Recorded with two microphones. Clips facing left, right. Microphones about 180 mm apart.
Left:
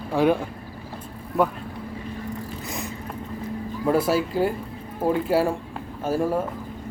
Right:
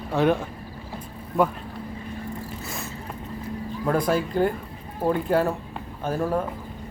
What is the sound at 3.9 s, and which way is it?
Speech, 5° left (ahead or behind).